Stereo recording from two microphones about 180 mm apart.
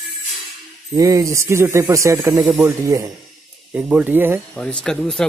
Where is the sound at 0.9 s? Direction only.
20° right (ahead or behind).